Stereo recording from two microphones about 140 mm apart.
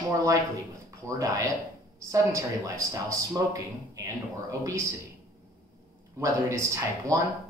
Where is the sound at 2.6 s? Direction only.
25° right (ahead or behind).